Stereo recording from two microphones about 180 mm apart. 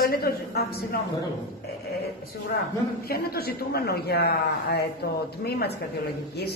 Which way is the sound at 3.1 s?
55° left (ahead or behind).